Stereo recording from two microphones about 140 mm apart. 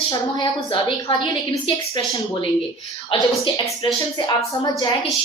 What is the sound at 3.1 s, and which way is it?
Speech, 40° left (ahead or behind).